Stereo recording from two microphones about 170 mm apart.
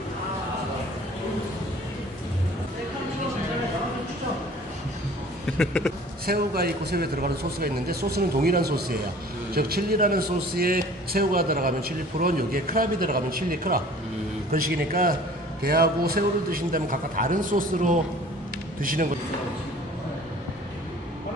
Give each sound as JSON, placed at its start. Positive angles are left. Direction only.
{"t": 5.6, "sound": "speech", "side_deg": 5}
{"t": 6.2, "sound": "a man's voice", "side_deg": -65}
{"t": 15.6, "sound": "a man's voice", "side_deg": -70}